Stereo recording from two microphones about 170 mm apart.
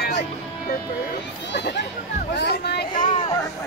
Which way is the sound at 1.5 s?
90° left.